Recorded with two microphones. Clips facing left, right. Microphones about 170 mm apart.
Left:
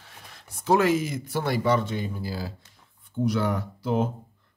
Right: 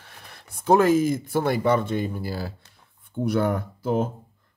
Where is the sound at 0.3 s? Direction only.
50° right (ahead or behind).